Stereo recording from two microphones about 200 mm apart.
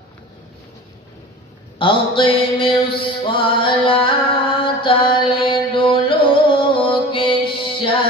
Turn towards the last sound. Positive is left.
turn(degrees=25)  # may be behind; listen again after turning